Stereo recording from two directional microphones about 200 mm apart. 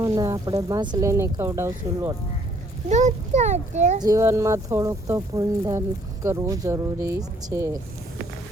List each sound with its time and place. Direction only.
0.0 s speech: 15° right (ahead or behind)
2.9 s a child's voice: 35° right (ahead or behind)
4.0 s speech: 15° right (ahead or behind)